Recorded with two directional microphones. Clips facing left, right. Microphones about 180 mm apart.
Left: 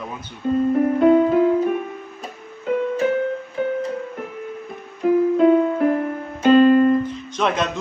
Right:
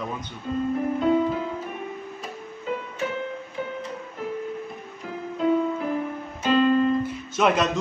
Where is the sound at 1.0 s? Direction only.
60° left (ahead or behind).